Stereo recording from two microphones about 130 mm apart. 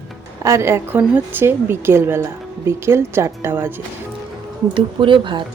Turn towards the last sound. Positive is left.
turn(degrees=-40)  # may be behind; listen again after turning